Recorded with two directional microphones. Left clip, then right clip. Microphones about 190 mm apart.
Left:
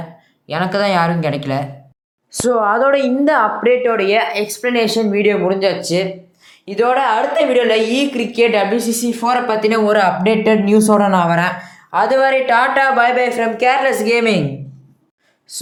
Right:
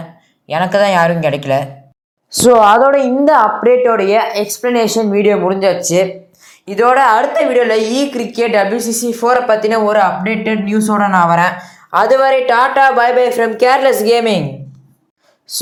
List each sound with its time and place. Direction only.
0.4 s a woman's voice: centre (ahead or behind)
2.3 s speech: 20° right (ahead or behind)
2.6 s a woman's voice: 10° right (ahead or behind)
7.3 s a woman's voice: centre (ahead or behind)
10.2 s speech: 20° left (ahead or behind)
11.1 s a woman's voice: 10° right (ahead or behind)
15.5 s speech: 25° right (ahead or behind)